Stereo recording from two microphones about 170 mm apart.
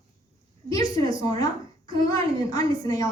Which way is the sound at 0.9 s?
20° left (ahead or behind).